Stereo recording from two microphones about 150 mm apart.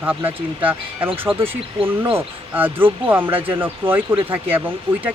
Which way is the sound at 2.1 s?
15° right (ahead or behind).